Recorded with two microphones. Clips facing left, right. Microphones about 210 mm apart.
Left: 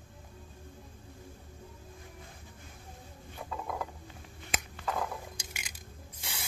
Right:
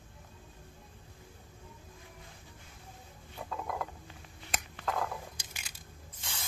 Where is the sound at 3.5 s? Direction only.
Centre (ahead or behind).